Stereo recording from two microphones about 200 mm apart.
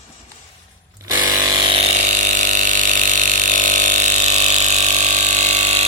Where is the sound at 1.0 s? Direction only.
20° right (ahead or behind).